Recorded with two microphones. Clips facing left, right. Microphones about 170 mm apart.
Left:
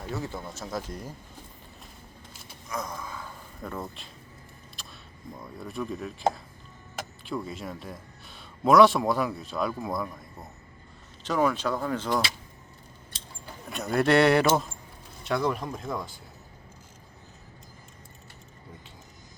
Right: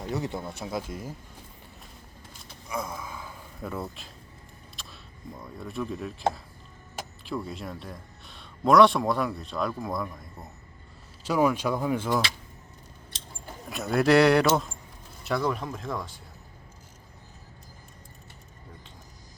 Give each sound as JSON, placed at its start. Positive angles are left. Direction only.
{"t": 0.0, "sound": "speech", "side_deg": -20}
{"t": 2.6, "sound": "speech", "side_deg": -10}
{"t": 4.8, "sound": "single-lens reflex camera", "side_deg": 0}
{"t": 5.4, "sound": "a man's voice", "side_deg": 0}
{"t": 11.2, "sound": "speech", "side_deg": -10}
{"t": 13.7, "sound": "a man's voice", "side_deg": 0}